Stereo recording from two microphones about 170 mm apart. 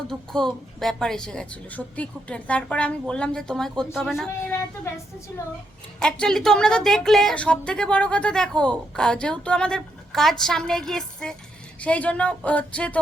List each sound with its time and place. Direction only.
0.1 s speech: 5° left (ahead or behind)
4.9 s speech: 15° left (ahead or behind)
6.0 s speech: 5° left (ahead or behind)